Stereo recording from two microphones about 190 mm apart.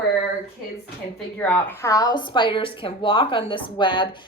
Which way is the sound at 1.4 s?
10° left (ahead or behind).